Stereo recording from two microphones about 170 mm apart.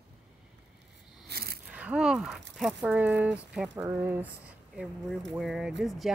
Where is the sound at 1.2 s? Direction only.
65° right (ahead or behind).